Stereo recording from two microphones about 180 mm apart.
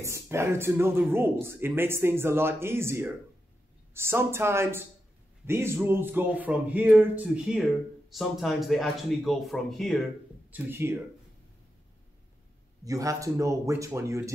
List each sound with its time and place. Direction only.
0.0 s speech: 15° right (ahead or behind); by 10.0 s centre (ahead or behind)
10.5 s speech: 10° right (ahead or behind)
12.8 s speech: 20° right (ahead or behind)